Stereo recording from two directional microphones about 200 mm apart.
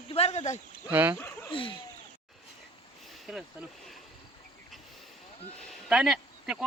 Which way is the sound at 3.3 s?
5° right (ahead or behind).